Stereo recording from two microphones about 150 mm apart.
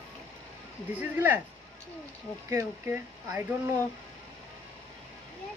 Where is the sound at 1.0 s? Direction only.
10° right (ahead or behind).